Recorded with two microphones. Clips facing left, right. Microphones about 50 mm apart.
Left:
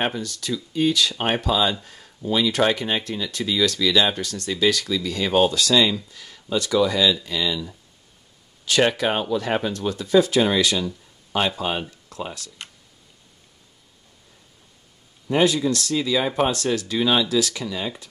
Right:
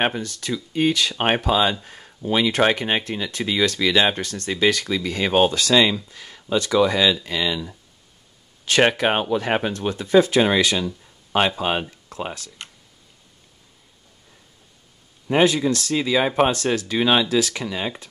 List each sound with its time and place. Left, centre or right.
0.0 s speech: right
8.6 s speech: right
15.2 s speech: right